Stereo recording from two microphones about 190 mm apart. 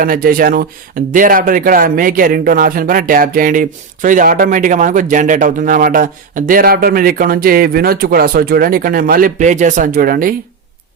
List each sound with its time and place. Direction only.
0.0 s speech: 50° right (ahead or behind)